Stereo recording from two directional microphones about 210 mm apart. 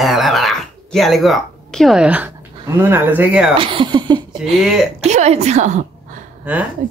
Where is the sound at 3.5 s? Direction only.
25° right (ahead or behind).